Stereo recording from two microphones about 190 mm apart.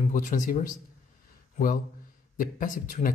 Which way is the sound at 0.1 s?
45° left (ahead or behind).